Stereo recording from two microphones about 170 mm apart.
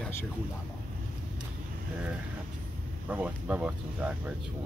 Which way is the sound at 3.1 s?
10° right (ahead or behind).